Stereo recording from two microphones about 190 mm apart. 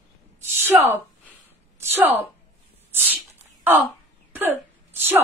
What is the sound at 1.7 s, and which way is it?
Speech, 10° right (ahead or behind).